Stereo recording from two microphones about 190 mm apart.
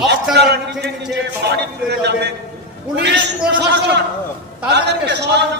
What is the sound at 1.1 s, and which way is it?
A man's voice, 60° right (ahead or behind).